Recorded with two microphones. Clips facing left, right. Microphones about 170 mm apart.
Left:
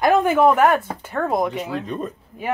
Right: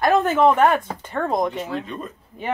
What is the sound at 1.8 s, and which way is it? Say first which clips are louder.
Speech: left 4 dB; 40° left (ahead or behind).